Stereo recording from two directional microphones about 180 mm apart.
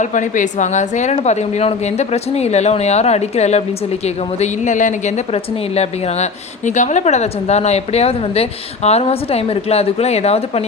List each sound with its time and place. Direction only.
0.0 s a woman's voice: 45° left (ahead or behind)